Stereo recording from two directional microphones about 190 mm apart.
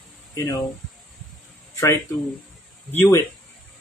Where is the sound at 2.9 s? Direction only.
10° left (ahead or behind).